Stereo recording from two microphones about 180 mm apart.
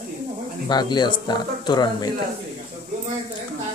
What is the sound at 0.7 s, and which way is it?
Speech, 25° left (ahead or behind).